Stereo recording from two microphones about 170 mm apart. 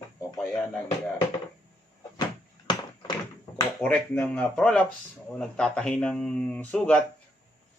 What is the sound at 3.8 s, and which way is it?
Speech, 10° left (ahead or behind).